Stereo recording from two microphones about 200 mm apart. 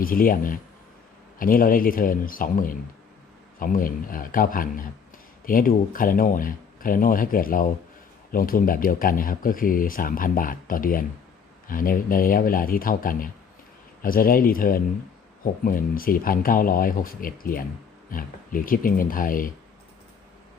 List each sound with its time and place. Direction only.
0.0 s speech: 45° left (ahead or behind)